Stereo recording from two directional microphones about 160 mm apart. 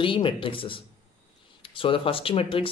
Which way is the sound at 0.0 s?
30° left (ahead or behind).